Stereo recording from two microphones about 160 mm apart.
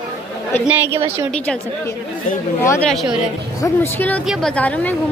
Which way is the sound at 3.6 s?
15° left (ahead or behind).